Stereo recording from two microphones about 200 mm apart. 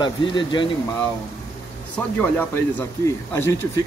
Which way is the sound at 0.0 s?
25° left (ahead or behind).